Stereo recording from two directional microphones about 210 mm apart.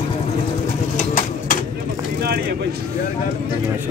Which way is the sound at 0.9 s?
35° left (ahead or behind).